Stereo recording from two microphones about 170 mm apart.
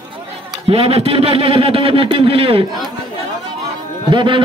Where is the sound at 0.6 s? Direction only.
35° right (ahead or behind).